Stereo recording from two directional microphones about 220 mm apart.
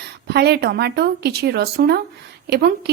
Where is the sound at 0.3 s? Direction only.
45° right (ahead or behind).